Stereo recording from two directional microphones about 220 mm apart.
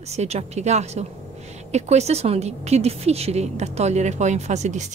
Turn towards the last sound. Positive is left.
turn(degrees=-30)  # may be behind; listen again after turning